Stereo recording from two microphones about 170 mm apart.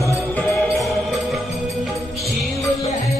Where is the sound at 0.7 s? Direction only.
Centre (ahead or behind).